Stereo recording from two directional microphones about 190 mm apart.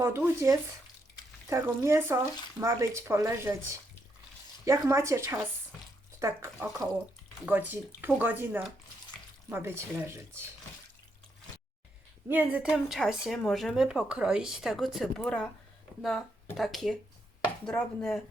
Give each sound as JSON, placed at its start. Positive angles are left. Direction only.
{"t": 0.0, "sound": "speech", "side_deg": -15}
{"t": 12.3, "sound": "speech", "side_deg": -10}